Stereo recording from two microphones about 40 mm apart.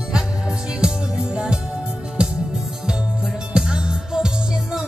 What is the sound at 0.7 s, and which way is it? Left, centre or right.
Music, right.